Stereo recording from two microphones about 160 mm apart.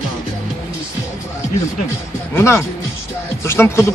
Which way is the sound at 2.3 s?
15° left (ahead or behind).